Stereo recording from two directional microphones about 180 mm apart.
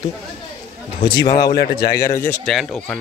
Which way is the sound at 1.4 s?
60° left (ahead or behind).